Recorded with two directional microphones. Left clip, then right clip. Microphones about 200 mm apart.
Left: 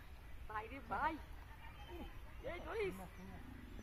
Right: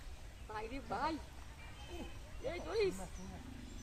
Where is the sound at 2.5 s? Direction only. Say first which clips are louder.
Right 6 dB; 65° right (ahead or behind).